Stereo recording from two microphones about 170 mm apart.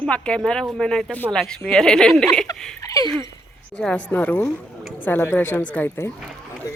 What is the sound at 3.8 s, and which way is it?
A woman's voice, 5° left (ahead or behind).